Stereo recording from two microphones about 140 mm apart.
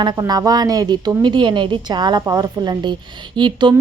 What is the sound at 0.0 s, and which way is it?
A woman's voice, 30° right (ahead or behind).